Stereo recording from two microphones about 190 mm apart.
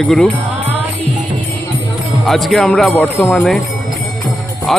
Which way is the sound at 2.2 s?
Centre (ahead or behind).